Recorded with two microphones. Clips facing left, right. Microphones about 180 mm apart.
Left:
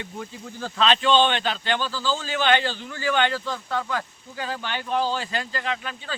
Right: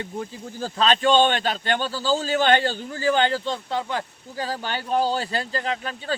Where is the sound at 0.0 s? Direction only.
35° right (ahead or behind).